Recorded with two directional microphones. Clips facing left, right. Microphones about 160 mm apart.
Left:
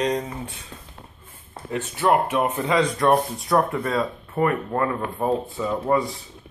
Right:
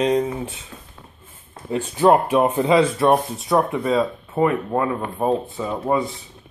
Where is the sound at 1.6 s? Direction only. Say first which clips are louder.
Right 5 dB; 30° right (ahead or behind).